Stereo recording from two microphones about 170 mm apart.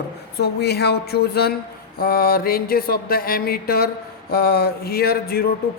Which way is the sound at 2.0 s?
60° left (ahead or behind).